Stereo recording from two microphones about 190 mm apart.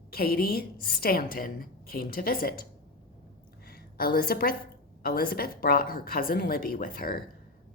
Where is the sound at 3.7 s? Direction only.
50° left (ahead or behind).